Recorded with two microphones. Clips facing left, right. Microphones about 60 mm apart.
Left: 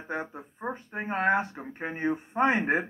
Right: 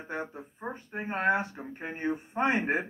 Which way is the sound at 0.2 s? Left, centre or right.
Left.